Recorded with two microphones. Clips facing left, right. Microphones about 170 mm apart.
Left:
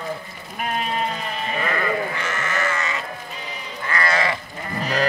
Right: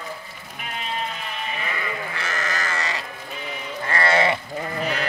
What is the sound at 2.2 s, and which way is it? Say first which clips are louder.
Sheep: left 3 dB; 35° right (ahead or behind).